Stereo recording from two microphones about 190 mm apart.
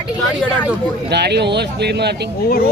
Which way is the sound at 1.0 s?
60° right (ahead or behind).